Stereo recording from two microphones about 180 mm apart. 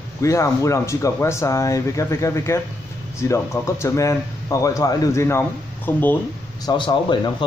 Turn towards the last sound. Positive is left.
turn(degrees=25)  # may be behind; listen again after turning